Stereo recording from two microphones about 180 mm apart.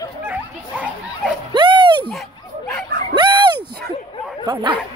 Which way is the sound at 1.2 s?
5° right (ahead or behind).